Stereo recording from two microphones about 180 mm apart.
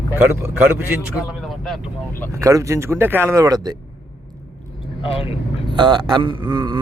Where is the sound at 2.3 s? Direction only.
15° right (ahead or behind).